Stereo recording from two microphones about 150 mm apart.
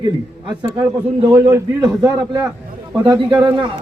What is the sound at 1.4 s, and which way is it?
Speech, 20° right (ahead or behind).